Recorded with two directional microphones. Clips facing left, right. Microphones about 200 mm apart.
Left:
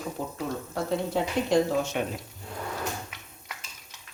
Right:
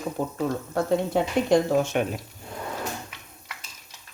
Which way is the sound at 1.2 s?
60° right (ahead or behind).